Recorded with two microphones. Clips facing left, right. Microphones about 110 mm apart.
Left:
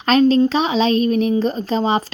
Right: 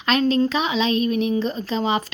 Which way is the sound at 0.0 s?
35° left (ahead or behind).